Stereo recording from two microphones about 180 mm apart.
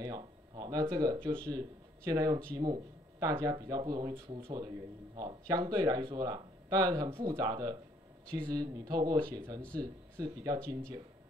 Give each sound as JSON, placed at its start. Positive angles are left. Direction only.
{"t": 0.0, "sound": "speech", "side_deg": -20}